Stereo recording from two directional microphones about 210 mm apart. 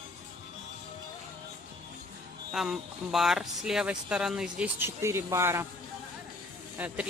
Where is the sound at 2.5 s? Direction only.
Centre (ahead or behind).